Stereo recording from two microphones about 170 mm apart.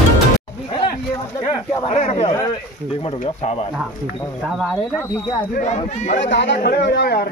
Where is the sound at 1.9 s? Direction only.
45° left (ahead or behind).